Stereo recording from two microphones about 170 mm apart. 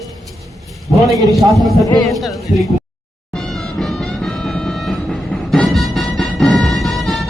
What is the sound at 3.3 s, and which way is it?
Music, 5° left (ahead or behind).